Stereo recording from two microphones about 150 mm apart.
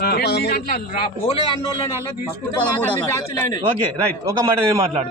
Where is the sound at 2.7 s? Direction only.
10° left (ahead or behind).